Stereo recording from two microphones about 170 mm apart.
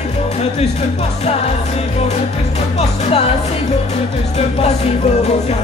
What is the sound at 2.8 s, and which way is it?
Music, 40° left (ahead or behind).